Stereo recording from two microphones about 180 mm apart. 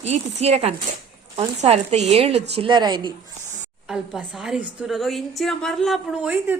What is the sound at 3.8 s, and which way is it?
A woman's voice, centre (ahead or behind).